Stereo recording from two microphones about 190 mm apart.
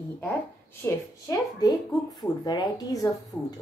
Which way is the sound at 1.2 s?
20° left (ahead or behind).